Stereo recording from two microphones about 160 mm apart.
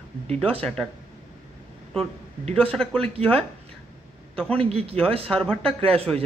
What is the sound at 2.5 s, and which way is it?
Speech, 5° left (ahead or behind).